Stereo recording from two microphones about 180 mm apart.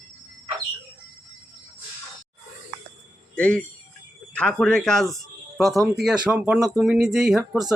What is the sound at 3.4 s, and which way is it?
Speech, 5° left (ahead or behind).